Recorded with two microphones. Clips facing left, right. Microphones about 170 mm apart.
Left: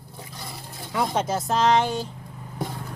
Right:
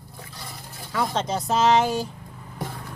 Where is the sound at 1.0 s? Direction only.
5° left (ahead or behind).